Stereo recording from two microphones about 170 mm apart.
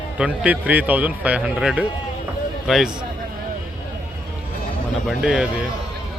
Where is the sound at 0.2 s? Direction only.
10° right (ahead or behind).